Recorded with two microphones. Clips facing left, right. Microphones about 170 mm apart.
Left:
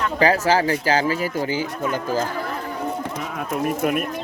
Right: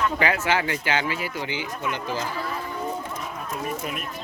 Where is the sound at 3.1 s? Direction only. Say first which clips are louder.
Left 6 dB; 85° left; by 4.2 s 55° left (ahead or behind).